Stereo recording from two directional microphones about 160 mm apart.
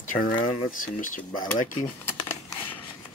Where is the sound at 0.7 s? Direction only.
55° left (ahead or behind).